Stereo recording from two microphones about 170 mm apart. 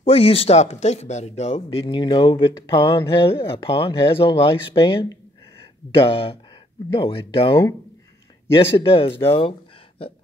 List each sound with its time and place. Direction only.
0.0 s speech: 35° left (ahead or behind)
1.9 s speech: 25° left (ahead or behind)